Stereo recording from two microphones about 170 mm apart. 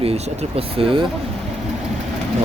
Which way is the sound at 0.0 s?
35° right (ahead or behind).